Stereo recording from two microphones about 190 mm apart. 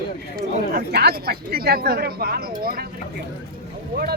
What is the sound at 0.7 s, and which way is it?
Speech, 55° right (ahead or behind).